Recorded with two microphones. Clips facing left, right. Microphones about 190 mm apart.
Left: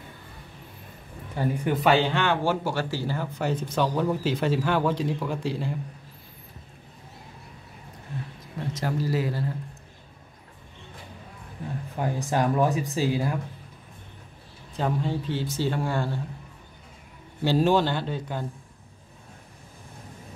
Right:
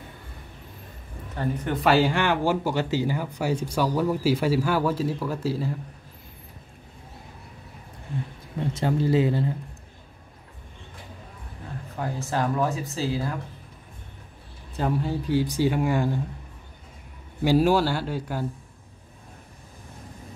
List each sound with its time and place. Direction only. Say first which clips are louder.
1.3 s speech: left 2 dB; 10° left (ahead or behind)
1.8 s speech: right 2 dB; 5° right (ahead or behind)
8.7 s speech: right 5 dB; 25° right (ahead or behind)
12.0 s speech: left 2 dB; 15° left (ahead or behind)
14.8 s speech: right 1 dB; 5° right (ahead or behind)
17.4 s speech: right 2 dB; 10° right (ahead or behind)